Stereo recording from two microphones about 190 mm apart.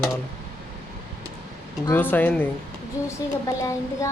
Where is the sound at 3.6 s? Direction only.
15° left (ahead or behind).